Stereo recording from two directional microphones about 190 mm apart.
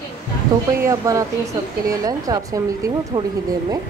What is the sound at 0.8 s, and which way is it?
Speech, 15° right (ahead or behind).